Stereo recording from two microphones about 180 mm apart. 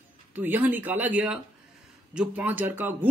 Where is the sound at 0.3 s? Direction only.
10° right (ahead or behind).